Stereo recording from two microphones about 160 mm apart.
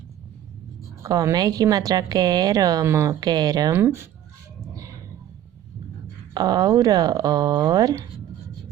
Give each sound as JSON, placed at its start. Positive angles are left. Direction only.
{"t": 1.0, "sound": "a woman's voice", "side_deg": -20}
{"t": 6.3, "sound": "a woman's voice", "side_deg": -25}